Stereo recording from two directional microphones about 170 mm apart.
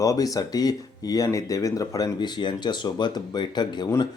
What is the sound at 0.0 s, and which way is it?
Speech, 20° left (ahead or behind).